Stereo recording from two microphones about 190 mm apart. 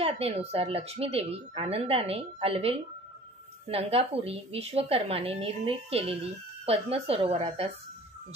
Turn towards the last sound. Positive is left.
turn(degrees=-30)  # may be behind; listen again after turning